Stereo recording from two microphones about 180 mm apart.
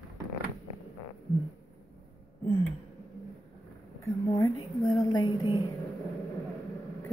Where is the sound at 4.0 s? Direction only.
15° left (ahead or behind).